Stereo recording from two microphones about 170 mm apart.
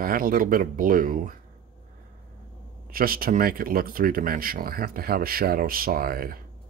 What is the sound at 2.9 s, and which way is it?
Speech, 60° right (ahead or behind).